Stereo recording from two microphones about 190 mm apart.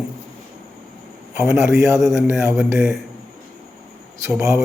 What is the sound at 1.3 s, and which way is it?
Speech, 5° right (ahead or behind).